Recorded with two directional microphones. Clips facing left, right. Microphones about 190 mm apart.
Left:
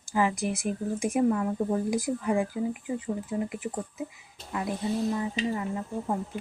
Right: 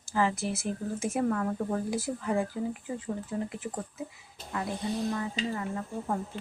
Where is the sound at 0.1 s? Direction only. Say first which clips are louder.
Left 2 dB; 15° left (ahead or behind).